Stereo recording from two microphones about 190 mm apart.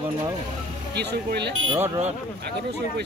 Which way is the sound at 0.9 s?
60° right (ahead or behind).